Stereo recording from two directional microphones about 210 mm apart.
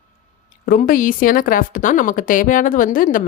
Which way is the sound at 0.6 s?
45° left (ahead or behind).